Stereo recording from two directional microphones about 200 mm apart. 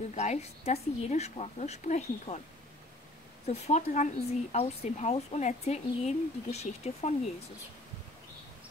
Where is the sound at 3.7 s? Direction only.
35° left (ahead or behind).